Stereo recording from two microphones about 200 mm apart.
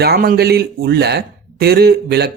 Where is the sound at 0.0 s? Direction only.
50° right (ahead or behind).